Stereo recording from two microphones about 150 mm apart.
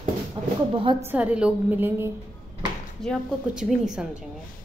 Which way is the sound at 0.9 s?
10° right (ahead or behind).